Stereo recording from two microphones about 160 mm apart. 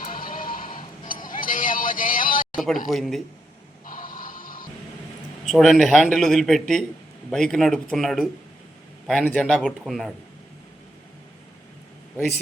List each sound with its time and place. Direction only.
0.0 s music: 60° left (ahead or behind)
2.9 s a man's voice: centre (ahead or behind)
3.8 s music: 55° left (ahead or behind)
5.5 s a man's voice: centre (ahead or behind)